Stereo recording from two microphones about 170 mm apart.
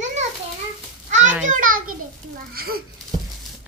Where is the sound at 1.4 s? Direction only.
55° right (ahead or behind).